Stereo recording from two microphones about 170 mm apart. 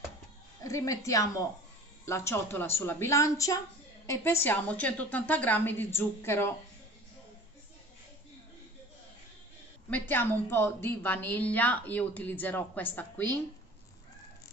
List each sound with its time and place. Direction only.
0.7 s a woman's voice: 20° left (ahead or behind)
9.8 s a woman's voice: 10° left (ahead or behind)